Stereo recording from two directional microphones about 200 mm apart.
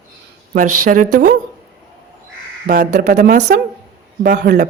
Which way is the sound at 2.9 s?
45° right (ahead or behind).